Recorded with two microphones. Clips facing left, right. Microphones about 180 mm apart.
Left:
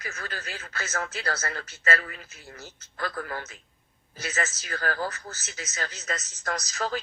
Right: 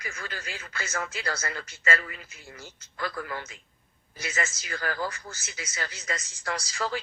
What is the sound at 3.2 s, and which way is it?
Speech, 45° left (ahead or behind).